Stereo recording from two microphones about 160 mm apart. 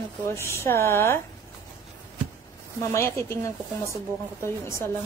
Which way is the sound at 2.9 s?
15° left (ahead or behind).